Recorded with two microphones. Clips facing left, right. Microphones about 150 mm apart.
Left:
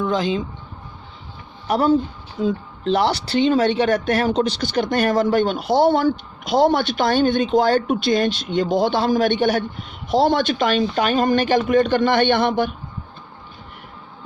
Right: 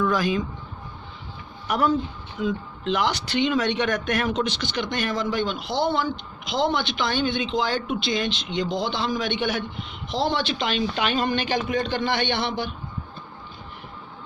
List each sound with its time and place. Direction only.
0.0 s speech: 25° left (ahead or behind)
1.6 s speech: 30° left (ahead or behind); by 12.7 s 50° left (ahead or behind)